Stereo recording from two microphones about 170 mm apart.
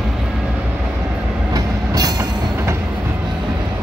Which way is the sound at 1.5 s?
20° right (ahead or behind).